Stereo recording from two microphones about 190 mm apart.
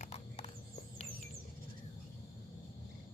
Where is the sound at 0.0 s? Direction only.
35° left (ahead or behind).